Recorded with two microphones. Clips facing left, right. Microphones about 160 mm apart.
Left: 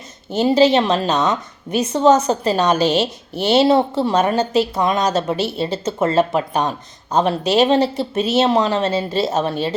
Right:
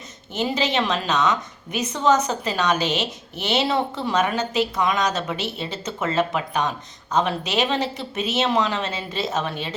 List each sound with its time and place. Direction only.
0.3 s a woman's voice: 35° left (ahead or behind)